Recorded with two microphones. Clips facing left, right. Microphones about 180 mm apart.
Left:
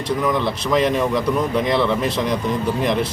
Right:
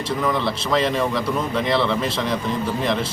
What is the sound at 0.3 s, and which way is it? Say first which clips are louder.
A man's voice: left 2 dB; 15° left (ahead or behind).